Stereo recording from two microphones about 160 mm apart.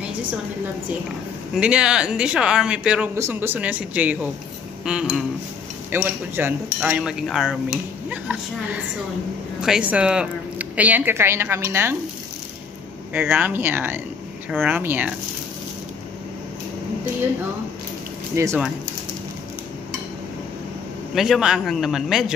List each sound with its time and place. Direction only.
1.5 s a man's voice: 5° right (ahead or behind)
9.6 s speech: 5° right (ahead or behind)
13.1 s speech: 10° right (ahead or behind)
18.3 s speech: 20° right (ahead or behind)
21.1 s a man's voice: centre (ahead or behind)